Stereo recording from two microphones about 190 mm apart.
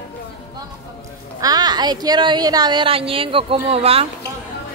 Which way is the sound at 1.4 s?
20° right (ahead or behind).